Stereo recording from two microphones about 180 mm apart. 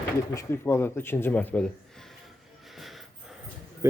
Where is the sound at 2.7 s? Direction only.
Centre (ahead or behind).